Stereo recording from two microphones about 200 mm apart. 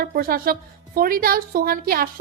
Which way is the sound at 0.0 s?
45° right (ahead or behind).